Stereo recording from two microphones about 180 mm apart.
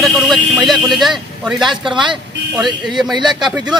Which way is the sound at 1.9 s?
25° right (ahead or behind).